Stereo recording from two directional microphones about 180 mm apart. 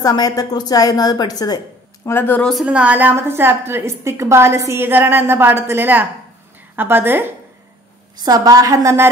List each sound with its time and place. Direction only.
0.0 s a woman's voice: 20° left (ahead or behind); by 9.1 s 15° right (ahead or behind)